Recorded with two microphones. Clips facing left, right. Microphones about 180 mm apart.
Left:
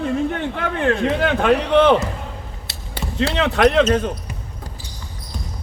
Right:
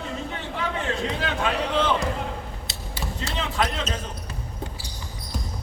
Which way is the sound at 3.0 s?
70° left (ahead or behind).